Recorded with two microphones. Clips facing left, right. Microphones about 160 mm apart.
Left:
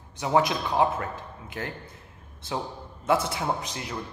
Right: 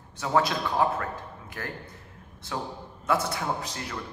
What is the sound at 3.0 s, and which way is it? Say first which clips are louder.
Speech: left 2 dB; 20° left (ahead or behind).